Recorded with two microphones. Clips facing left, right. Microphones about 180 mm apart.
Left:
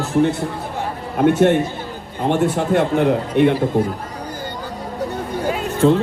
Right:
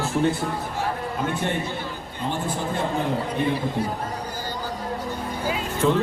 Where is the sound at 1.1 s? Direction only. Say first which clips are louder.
Left 17 dB; 70° left (ahead or behind).